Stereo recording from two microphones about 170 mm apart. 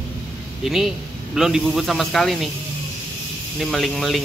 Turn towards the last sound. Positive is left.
turn(degrees=0)  # may be behind; listen again after turning